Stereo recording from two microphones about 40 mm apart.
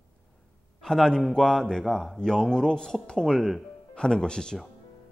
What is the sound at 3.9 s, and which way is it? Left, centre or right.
Speech, left.